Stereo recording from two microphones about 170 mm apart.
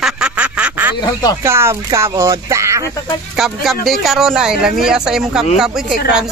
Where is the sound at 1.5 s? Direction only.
15° right (ahead or behind).